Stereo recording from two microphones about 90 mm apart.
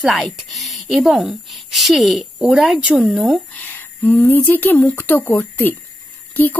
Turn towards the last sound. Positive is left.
turn(degrees=20)  # may be behind; listen again after turning